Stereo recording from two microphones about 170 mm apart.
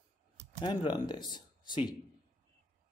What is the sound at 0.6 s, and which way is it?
Speech, 30° left (ahead or behind).